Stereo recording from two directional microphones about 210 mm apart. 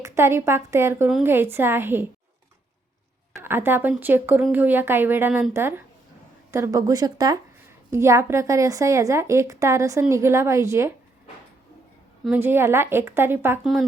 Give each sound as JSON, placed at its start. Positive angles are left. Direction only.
{"t": 0.0, "sound": "a woman's voice", "side_deg": -10}
{"t": 3.3, "sound": "a woman's voice", "side_deg": -10}
{"t": 12.2, "sound": "a woman's voice", "side_deg": -10}